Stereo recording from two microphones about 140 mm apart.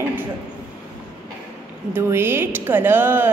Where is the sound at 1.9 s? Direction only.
15° right (ahead or behind).